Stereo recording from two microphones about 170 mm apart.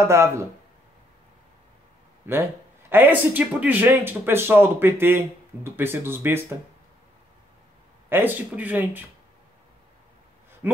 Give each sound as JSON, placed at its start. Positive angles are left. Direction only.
{"t": 0.0, "sound": "speech", "side_deg": -15}
{"t": 2.3, "sound": "speech", "side_deg": -10}
{"t": 8.1, "sound": "speech", "side_deg": -10}
{"t": 10.6, "sound": "speech", "side_deg": -10}